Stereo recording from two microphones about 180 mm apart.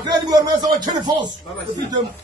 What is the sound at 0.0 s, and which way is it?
Speech, 25° right (ahead or behind).